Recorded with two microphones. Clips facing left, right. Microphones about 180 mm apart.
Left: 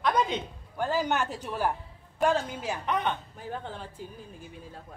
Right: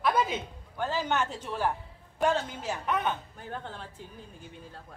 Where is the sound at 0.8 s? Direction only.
10° left (ahead or behind).